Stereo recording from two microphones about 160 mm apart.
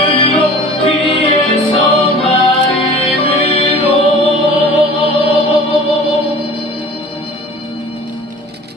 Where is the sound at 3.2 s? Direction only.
35° left (ahead or behind).